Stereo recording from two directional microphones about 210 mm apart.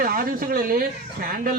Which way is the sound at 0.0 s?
40° right (ahead or behind).